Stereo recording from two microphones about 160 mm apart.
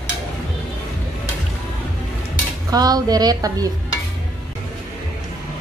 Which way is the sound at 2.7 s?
25° right (ahead or behind).